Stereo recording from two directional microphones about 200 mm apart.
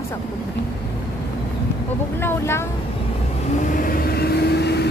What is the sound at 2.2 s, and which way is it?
Speech, 10° left (ahead or behind).